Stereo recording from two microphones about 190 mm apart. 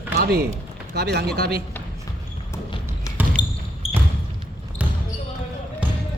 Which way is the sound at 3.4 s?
25° left (ahead or behind).